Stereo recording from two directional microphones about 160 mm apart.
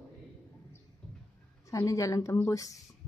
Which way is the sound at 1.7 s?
20° left (ahead or behind).